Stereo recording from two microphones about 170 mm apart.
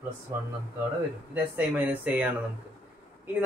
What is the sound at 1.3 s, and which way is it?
Speech, 10° right (ahead or behind).